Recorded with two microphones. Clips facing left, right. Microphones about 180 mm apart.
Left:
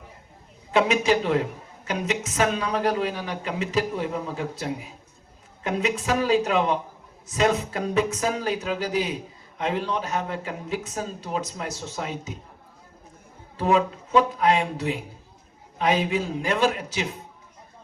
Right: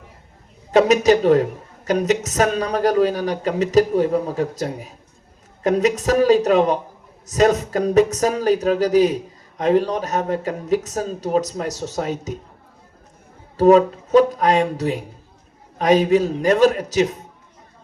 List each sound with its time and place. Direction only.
0.7 s speech: 40° right (ahead or behind)
13.6 s speech: 40° right (ahead or behind)